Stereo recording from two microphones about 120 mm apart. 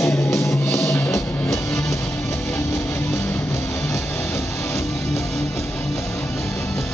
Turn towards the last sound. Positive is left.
turn(degrees=25)  # may be behind; listen again after turning